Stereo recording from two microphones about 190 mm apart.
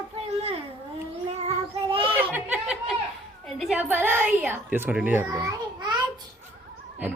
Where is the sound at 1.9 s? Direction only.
30° right (ahead or behind).